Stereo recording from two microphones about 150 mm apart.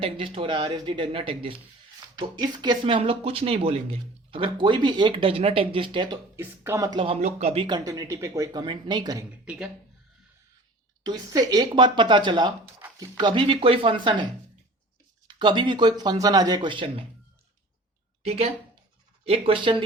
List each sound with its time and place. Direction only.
0.0 s speech: 35° right (ahead or behind)
6.3 s speech: 15° right (ahead or behind); by 7.2 s 35° right (ahead or behind)
7.2 s speech: 50° right (ahead or behind); by 9.2 s 30° right (ahead or behind)
9.4 s speech: 10° right (ahead or behind)
11.0 s speech: 25° right (ahead or behind)
15.3 s speech: 30° right (ahead or behind)
18.2 s speech: 45° right (ahead or behind)